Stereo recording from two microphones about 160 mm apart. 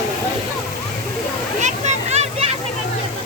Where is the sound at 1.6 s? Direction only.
45° right (ahead or behind).